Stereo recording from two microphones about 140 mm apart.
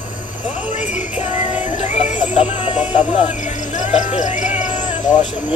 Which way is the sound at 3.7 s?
60° left (ahead or behind).